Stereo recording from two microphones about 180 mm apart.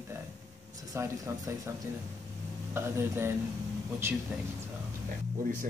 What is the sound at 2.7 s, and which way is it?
Speech, 15° right (ahead or behind).